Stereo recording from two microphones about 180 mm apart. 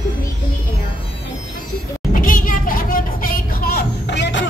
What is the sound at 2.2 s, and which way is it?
Vehicle, 50° left (ahead or behind).